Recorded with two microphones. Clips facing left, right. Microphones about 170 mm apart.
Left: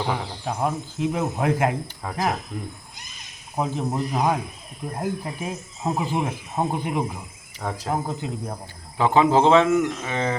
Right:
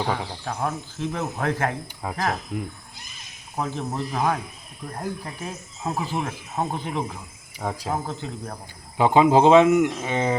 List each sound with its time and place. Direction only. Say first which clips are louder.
0.1 s speech: left 1 dB; 15° left (ahead or behind)
2.5 s speech: right 3 dB; 10° right (ahead or behind)
3.6 s speech: left 3 dB; 15° left (ahead or behind)
7.6 s speech: right 1 dB; 5° right (ahead or behind)
8.0 s speech: left 3 dB; 10° left (ahead or behind)
9.0 s speech: right 1 dB; 15° right (ahead or behind)